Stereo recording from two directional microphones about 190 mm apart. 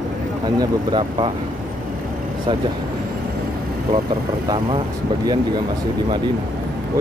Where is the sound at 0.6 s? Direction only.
25° right (ahead or behind).